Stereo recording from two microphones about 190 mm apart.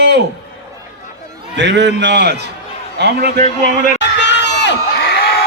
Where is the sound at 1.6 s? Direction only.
65° right (ahead or behind).